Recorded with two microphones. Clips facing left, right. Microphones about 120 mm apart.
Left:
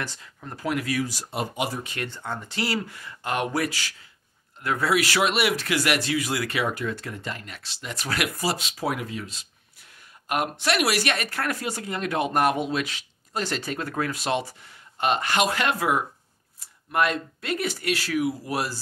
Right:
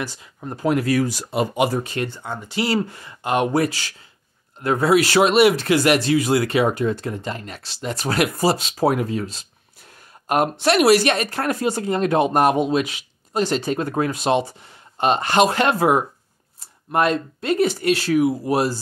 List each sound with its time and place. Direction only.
0.0 s speech: 10° right (ahead or behind)
0.4 s speech: 25° right (ahead or behind)
0.7 s speech: 40° right (ahead or behind)
1.0 s speech: 80° right
1.7 s speech: 40° right (ahead or behind)
2.0 s speech: 5° right (ahead or behind)
2.6 s speech: 30° right (ahead or behind)